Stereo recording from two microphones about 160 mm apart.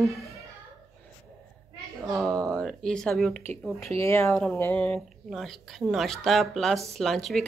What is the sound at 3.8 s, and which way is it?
A woman's voice, 15° left (ahead or behind).